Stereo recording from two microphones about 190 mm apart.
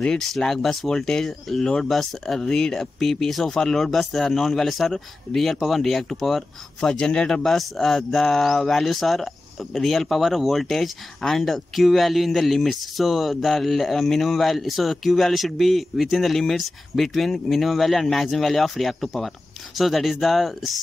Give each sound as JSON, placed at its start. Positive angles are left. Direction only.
{"t": 0.0, "sound": "speech", "side_deg": 5}